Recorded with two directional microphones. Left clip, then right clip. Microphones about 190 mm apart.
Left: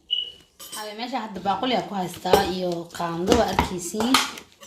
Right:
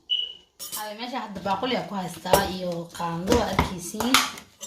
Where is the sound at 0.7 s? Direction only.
35° left (ahead or behind).